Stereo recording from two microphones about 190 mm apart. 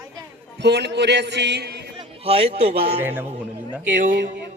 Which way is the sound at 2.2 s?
30° right (ahead or behind).